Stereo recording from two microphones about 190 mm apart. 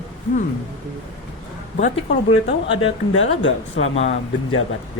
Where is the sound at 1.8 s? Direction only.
40° left (ahead or behind).